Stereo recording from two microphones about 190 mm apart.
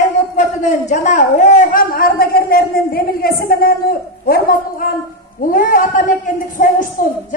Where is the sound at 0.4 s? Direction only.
40° left (ahead or behind).